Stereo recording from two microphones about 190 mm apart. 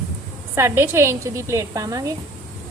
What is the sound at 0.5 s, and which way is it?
A woman's voice, 15° right (ahead or behind).